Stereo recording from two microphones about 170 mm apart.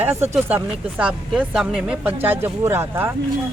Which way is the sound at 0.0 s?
10° right (ahead or behind).